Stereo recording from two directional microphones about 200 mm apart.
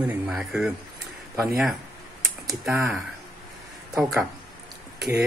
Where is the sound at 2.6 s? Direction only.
10° right (ahead or behind).